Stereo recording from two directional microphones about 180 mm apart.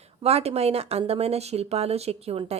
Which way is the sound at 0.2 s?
35° right (ahead or behind).